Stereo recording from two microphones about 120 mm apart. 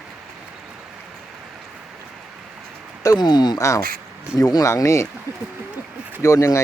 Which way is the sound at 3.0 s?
35° left (ahead or behind).